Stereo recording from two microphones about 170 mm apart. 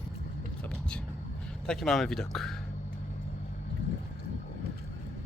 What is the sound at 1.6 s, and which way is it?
Speech, centre (ahead or behind).